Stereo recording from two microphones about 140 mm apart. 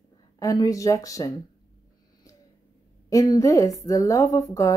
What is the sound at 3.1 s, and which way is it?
Speech, 25° left (ahead or behind).